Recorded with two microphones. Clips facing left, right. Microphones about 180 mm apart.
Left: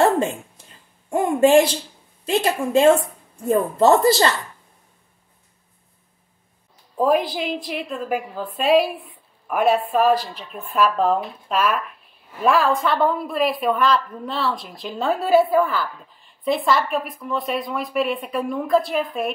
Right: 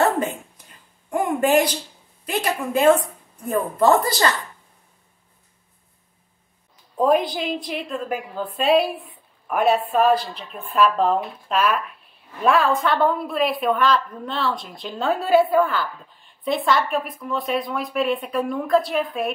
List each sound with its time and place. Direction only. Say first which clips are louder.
0.0 s a sound: left 3 dB; 25° left (ahead or behind)
1.1 s a woman's voice: left 4 dB; 25° left (ahead or behind)
7.0 s a woman's voice: even; centre (ahead or behind)